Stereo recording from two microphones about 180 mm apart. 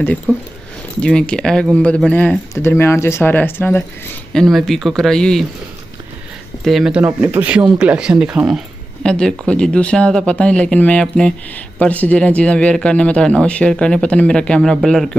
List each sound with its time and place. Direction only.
0.3 s speech: 5° left (ahead or behind)
6.6 s speech: centre (ahead or behind)